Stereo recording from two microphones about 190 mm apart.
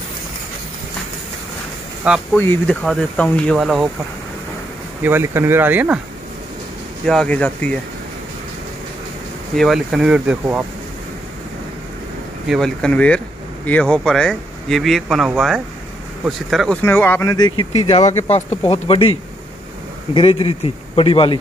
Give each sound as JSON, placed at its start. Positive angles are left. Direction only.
{"t": 2.3, "sound": "speech", "side_deg": 10}
{"t": 5.0, "sound": "speech", "side_deg": -10}
{"t": 7.1, "sound": "speech", "side_deg": 5}
{"t": 9.6, "sound": "speech", "side_deg": 0}
{"t": 12.4, "sound": "speech", "side_deg": 0}
{"t": 20.2, "sound": "a man's voice", "side_deg": 30}